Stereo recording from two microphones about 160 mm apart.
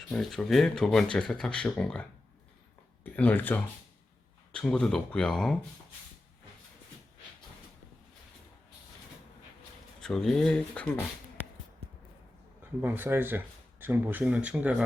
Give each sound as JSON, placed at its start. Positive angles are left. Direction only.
{"t": 0.1, "sound": "speech", "side_deg": 0}
{"t": 10.0, "sound": "speech", "side_deg": 5}
{"t": 12.8, "sound": "speech", "side_deg": -10}